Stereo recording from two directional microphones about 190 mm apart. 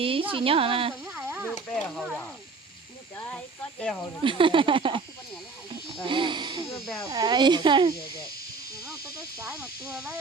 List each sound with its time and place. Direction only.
0.0 s speech: 30° right (ahead or behind)
1.0 s a sound: 10° right (ahead or behind)
1.5 s speech: 5° left (ahead or behind)
3.2 s speech: 10° left (ahead or behind)
4.2 s speech: 25° right (ahead or behind)
6.1 s speech: 25° right (ahead or behind)
9.4 s speech: 10° right (ahead or behind)